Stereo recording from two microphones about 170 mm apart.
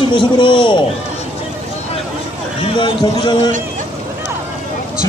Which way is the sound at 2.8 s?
25° left (ahead or behind).